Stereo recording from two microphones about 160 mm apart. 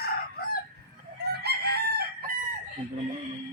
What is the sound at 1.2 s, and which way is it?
Chicken, 90° right.